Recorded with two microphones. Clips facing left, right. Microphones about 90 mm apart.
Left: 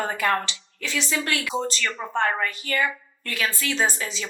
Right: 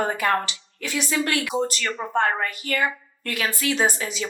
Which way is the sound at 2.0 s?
90° right.